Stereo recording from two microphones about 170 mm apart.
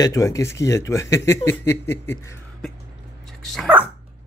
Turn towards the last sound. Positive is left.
turn(degrees=-10)  # may be behind; listen again after turning